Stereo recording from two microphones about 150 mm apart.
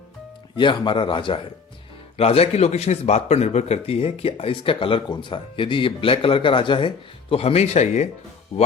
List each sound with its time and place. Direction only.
0.5 s a man's voice: 30° left (ahead or behind); by 8.0 s 50° left (ahead or behind)